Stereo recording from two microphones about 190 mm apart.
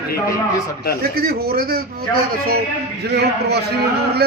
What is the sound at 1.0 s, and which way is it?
Speech, 55° right (ahead or behind).